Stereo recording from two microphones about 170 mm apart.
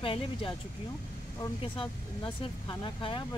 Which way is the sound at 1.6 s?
30° left (ahead or behind).